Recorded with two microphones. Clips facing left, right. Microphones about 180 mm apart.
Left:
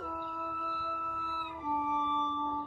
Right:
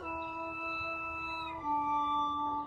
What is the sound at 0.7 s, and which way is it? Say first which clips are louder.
Music: left 2 dB; 15° right (ahead or behind).